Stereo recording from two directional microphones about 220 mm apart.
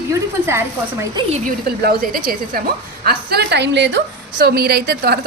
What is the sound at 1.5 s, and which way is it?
A woman's voice, 40° right (ahead or behind).